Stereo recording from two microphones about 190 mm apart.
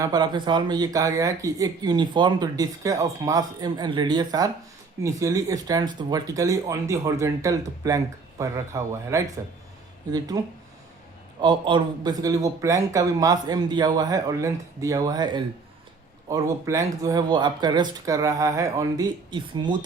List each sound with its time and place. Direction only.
0.0 s speech: 20° right (ahead or behind)